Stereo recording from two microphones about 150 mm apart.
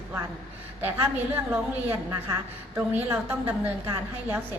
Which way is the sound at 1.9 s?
15° right (ahead or behind).